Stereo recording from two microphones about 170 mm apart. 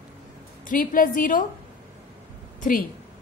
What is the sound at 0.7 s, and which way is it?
Speech, 55° left (ahead or behind).